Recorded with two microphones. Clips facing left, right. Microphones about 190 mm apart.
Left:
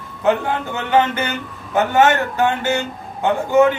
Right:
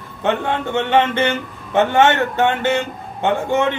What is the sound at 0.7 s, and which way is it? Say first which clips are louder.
A man's voice: right 1 dB; 25° right (ahead or behind).